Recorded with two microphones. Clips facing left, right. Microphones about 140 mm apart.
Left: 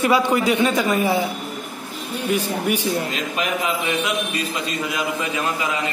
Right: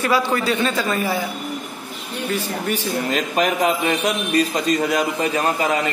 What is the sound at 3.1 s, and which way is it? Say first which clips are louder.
A man's voice: right 4 dB; 45° right (ahead or behind).